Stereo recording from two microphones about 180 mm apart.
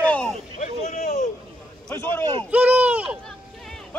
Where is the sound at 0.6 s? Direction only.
45° left (ahead or behind).